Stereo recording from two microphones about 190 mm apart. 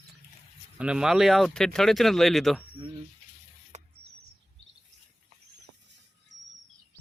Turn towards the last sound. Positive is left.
turn(degrees=-20)  # may be behind; listen again after turning